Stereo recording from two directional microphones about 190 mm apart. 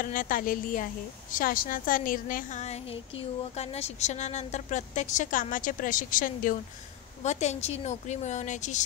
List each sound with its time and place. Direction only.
0.0 s a woman's voice: 45° left (ahead or behind)